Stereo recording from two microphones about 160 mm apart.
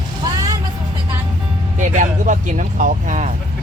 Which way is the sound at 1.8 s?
50° right (ahead or behind).